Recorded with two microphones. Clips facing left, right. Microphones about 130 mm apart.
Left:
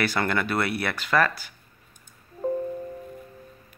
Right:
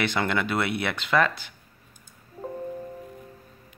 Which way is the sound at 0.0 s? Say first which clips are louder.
Even; 20° right (ahead or behind).